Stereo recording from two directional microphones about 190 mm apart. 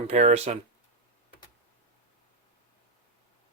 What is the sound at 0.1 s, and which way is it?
Speech, 35° right (ahead or behind).